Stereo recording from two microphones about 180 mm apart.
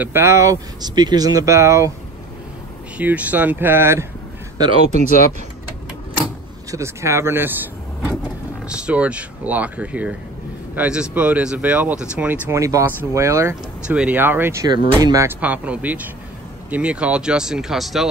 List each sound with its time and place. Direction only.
0.0 s speech: 15° right (ahead or behind)
3.0 s speech: 10° right (ahead or behind)
4.6 s speech: 30° right (ahead or behind)
6.7 s speech: 15° right (ahead or behind)
8.6 s speech: 5° right (ahead or behind)